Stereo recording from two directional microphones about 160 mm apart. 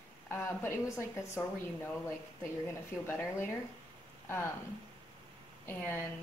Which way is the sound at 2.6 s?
15° left (ahead or behind).